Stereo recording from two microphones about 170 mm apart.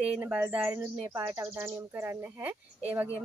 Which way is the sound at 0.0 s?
10° right (ahead or behind).